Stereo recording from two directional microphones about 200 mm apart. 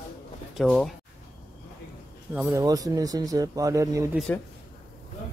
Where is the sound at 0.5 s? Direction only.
Centre (ahead or behind).